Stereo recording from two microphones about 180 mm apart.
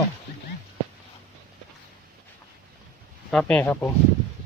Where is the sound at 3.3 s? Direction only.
5° left (ahead or behind).